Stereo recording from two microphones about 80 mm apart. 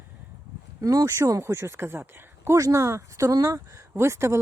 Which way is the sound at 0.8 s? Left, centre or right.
Right.